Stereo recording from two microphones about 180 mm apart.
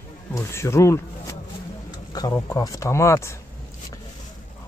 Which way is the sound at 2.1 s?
20° left (ahead or behind).